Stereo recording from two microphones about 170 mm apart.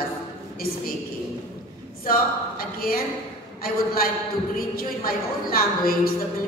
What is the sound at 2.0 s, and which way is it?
A woman's voice, 60° left (ahead or behind).